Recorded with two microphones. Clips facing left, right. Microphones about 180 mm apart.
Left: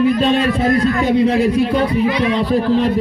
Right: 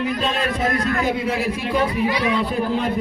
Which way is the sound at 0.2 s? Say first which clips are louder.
Left 7 dB; 35° left (ahead or behind).